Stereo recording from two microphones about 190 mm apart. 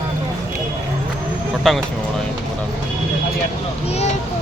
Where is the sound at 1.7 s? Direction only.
Centre (ahead or behind).